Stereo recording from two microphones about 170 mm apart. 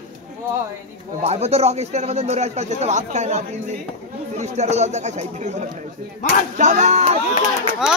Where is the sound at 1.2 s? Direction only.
40° right (ahead or behind).